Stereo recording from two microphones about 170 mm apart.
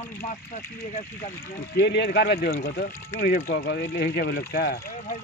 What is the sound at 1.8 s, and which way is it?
Speech, 75° left (ahead or behind).